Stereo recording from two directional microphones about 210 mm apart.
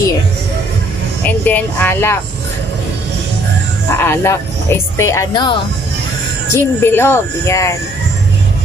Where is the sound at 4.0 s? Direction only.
10° left (ahead or behind).